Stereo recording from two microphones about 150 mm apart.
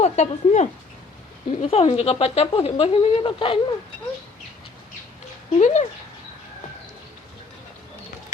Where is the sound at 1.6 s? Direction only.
40° left (ahead or behind).